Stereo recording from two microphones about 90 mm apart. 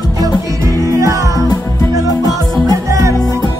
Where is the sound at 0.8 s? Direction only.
35° right (ahead or behind).